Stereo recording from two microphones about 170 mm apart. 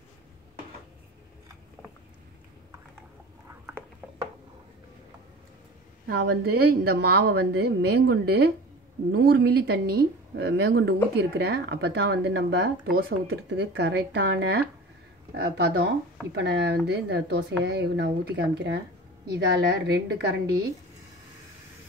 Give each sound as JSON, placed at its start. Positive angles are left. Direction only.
{"t": 6.0, "sound": "speech", "side_deg": -70}
{"t": 15.3, "sound": "speech", "side_deg": -70}